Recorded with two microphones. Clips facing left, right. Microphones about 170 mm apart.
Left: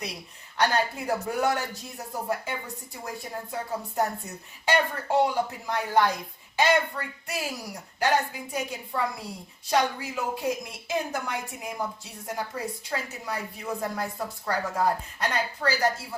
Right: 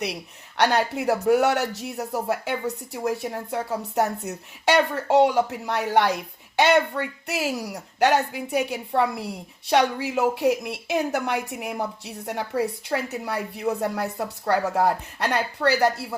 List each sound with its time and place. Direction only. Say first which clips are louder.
0.0 s speech: right 7 dB; 70° right (ahead or behind)